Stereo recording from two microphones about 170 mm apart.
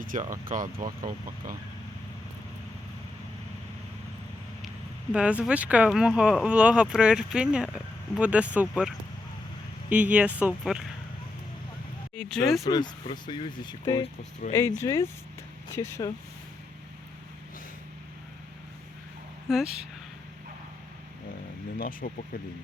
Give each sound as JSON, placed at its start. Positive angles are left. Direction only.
{"t": 0.0, "sound": "speech", "side_deg": -50}
{"t": 5.1, "sound": "speech", "side_deg": -5}
{"t": 9.9, "sound": "speech", "side_deg": -10}
{"t": 12.1, "sound": "speech", "side_deg": 5}
{"t": 12.6, "sound": "speech", "side_deg": 25}
{"t": 19.5, "sound": "speech", "side_deg": 0}
{"t": 21.8, "sound": "speech", "side_deg": 55}